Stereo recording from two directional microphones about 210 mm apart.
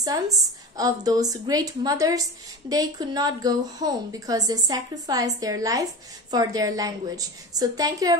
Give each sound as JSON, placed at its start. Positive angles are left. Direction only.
{"t": 0.0, "sound": "a woman's voice", "side_deg": -15}